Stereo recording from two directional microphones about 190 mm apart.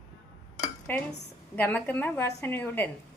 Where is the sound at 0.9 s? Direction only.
10° left (ahead or behind).